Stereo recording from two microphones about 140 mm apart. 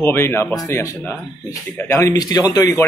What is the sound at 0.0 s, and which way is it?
Speech, 15° left (ahead or behind).